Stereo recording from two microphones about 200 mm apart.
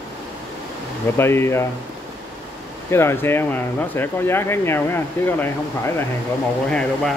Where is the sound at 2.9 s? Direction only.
10° left (ahead or behind).